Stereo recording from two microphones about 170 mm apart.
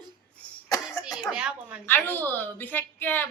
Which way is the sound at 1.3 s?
5° right (ahead or behind).